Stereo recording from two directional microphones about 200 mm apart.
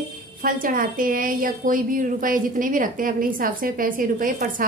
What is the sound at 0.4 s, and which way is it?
A woman's voice, 45° right (ahead or behind).